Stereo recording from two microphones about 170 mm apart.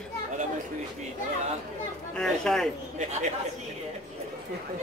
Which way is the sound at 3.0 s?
45° right (ahead or behind).